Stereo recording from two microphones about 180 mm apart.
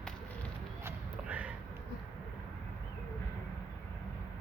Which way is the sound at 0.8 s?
5° right (ahead or behind).